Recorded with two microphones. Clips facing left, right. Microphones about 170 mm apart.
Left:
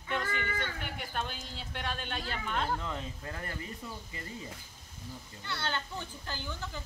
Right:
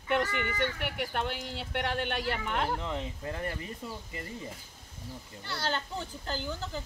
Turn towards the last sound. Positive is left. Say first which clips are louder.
# right 5 dB
turn(degrees=-35)  # may be behind; listen again after turning